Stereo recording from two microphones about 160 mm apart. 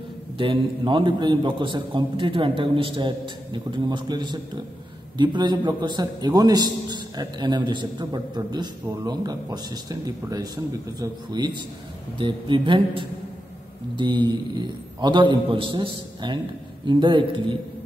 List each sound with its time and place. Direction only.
0.4 s a man's voice: 30° right (ahead or behind)